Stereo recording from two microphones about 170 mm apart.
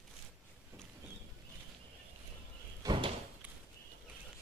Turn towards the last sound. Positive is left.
turn(degrees=-30)  # may be behind; listen again after turning